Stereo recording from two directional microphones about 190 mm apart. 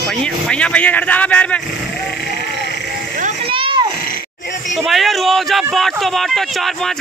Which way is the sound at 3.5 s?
25° right (ahead or behind).